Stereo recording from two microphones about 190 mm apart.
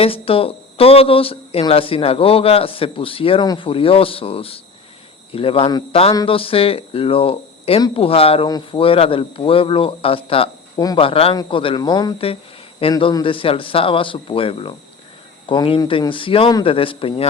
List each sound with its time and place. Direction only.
0.0 s speech: 30° left (ahead or behind)